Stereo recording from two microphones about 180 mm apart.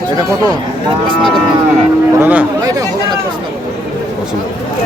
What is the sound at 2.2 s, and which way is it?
Speech, 10° right (ahead or behind).